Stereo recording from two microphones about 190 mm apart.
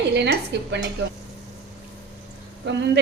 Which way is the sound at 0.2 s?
65° right (ahead or behind).